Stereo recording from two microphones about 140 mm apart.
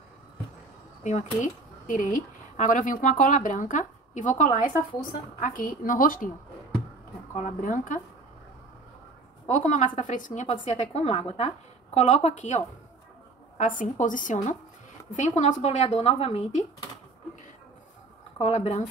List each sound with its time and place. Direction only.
1.0 s a woman's voice: 60° left (ahead or behind); by 6.3 s 80° left
7.3 s a woman's voice: 65° left (ahead or behind)
9.5 s a woman's voice: 60° left (ahead or behind)
15.1 s a woman's voice: 55° left (ahead or behind)
18.4 s a woman's voice: 50° left (ahead or behind)